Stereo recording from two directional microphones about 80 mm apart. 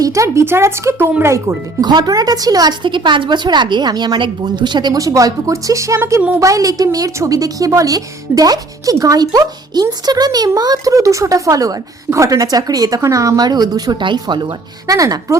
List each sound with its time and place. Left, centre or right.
0.0 s speech: right
1.8 s speech: right
4.9 s a woman's voice: right
14.0 s speech: right
14.8 s a woman's voice: right